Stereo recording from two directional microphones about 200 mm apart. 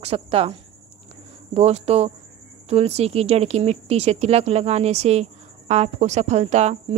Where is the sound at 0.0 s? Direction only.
30° right (ahead or behind).